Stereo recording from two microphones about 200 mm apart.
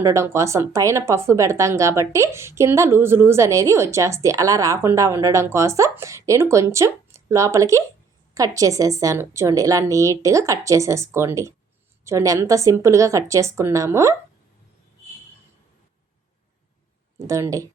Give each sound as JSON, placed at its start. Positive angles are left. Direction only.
{"t": 0.0, "sound": "speech", "side_deg": -15}
{"t": 17.2, "sound": "speech", "side_deg": -15}